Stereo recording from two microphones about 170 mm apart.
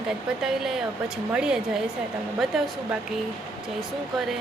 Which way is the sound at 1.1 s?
5° right (ahead or behind).